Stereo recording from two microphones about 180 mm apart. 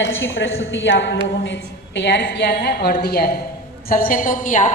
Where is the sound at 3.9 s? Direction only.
50° left (ahead or behind).